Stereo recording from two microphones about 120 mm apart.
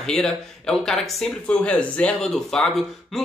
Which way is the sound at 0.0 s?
5° left (ahead or behind).